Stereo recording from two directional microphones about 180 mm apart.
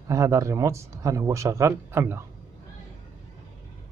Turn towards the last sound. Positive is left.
turn(degrees=-15)  # may be behind; listen again after turning